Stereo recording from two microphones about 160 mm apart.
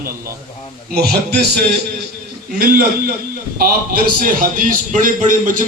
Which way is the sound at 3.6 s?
65° right (ahead or behind).